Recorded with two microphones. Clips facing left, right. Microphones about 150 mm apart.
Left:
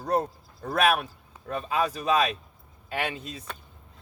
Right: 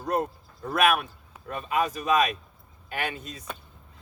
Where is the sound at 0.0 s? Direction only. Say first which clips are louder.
Left 1 dB; 35° left (ahead or behind).